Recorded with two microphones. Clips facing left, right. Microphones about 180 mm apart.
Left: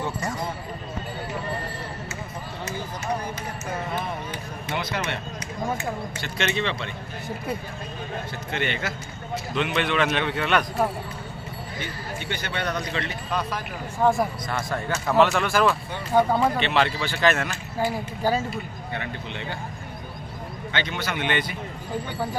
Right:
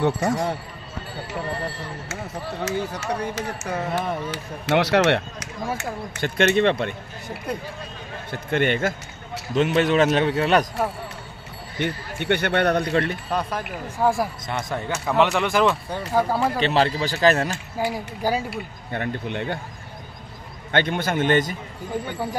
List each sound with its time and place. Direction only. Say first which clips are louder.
0.0 s a man's voice: right 7 dB; 70° right (ahead or behind)
2.0 s speech: right 4 dB; 90° right; by 5.5 s 75° right (ahead or behind)
6.2 s a man's voice: right 9 dB; 50° right (ahead or behind)
8.3 s a man's voice: right 9 dB; 55° right (ahead or behind); by 10.7 s 35° right (ahead or behind)
11.8 s a man's voice: right 9 dB; 65° right (ahead or behind)
14.0 s speech: even; 5° right (ahead or behind)
14.5 s speech: right 1 dB; 20° right (ahead or behind)
16.2 s speech: left 2 dB; 5° right (ahead or behind)
16.5 s a man's voice: right 3 dB; 35° right (ahead or behind)
17.7 s speech: left 1 dB; 10° right (ahead or behind)
18.9 s a man's voice: right 9 dB; 50° right (ahead or behind)
20.7 s a man's voice: right 7 dB; 50° right (ahead or behind)